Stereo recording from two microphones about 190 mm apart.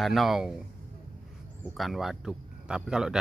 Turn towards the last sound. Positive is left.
turn(degrees=-5)  # may be behind; listen again after turning